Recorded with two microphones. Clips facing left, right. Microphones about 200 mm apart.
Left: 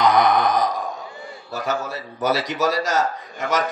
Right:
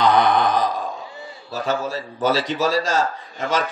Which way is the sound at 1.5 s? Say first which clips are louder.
Right 2 dB; 30° right (ahead or behind).